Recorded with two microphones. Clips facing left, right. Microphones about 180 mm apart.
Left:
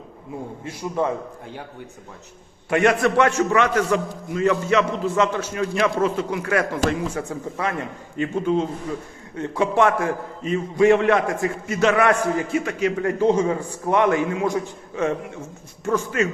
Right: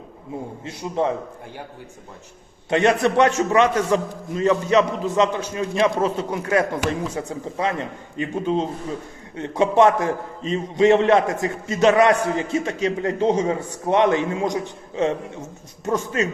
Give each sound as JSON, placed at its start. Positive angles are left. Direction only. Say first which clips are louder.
{"t": 0.6, "sound": "a man's voice", "louder": "right 1 dB", "side_deg": -20}
{"t": 2.6, "sound": "a man's voice", "louder": "even", "side_deg": -25}
{"t": 7.1, "sound": "a man's voice", "louder": "even", "side_deg": -15}